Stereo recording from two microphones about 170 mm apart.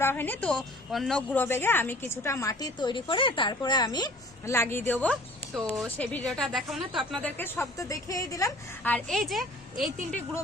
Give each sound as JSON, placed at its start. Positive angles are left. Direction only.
{"t": 0.0, "sound": "a woman's voice", "side_deg": 10}
{"t": 8.9, "sound": "speech", "side_deg": 0}